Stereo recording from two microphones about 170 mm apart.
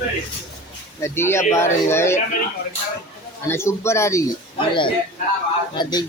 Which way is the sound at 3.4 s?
15° left (ahead or behind).